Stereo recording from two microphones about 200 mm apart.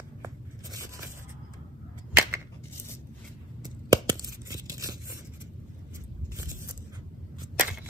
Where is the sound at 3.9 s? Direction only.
20° right (ahead or behind).